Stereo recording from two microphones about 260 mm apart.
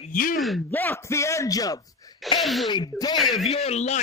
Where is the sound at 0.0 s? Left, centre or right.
Left.